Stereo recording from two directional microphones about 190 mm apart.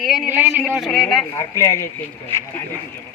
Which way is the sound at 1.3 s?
15° left (ahead or behind).